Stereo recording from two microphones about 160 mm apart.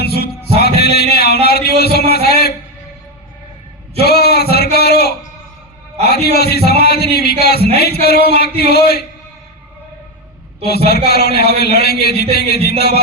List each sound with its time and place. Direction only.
0.0 s music: 85° left
0.8 s a man's voice: 85° left
4.0 s a sound: 85° left
6.0 s a man's voice: 85° left
10.7 s a man's voice: 80° left